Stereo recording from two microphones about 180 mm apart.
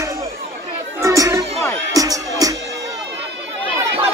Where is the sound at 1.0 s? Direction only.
15° right (ahead or behind).